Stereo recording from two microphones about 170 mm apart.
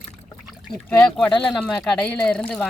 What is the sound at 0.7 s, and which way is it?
Speech, 5° left (ahead or behind).